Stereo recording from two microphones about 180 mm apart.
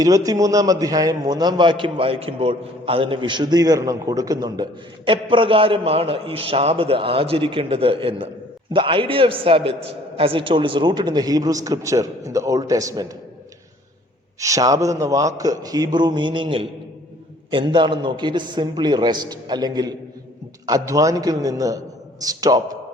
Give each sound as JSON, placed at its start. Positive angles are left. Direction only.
{"t": 0.0, "sound": "a man's voice", "side_deg": -20}
{"t": 14.3, "sound": "a man's voice", "side_deg": -20}